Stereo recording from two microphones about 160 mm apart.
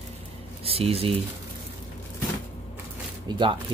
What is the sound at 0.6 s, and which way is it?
Speech, 40° right (ahead or behind).